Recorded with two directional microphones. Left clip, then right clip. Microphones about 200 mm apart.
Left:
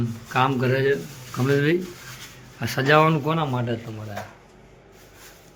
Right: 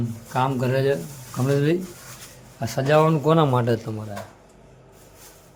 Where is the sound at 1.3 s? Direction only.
20° right (ahead or behind).